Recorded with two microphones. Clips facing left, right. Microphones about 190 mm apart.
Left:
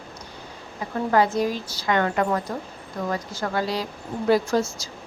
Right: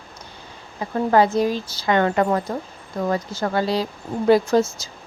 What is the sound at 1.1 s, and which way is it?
A woman's voice, 25° right (ahead or behind).